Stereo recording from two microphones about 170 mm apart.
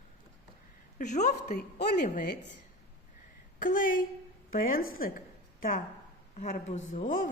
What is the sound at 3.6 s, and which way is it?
A woman's voice, 50° left (ahead or behind).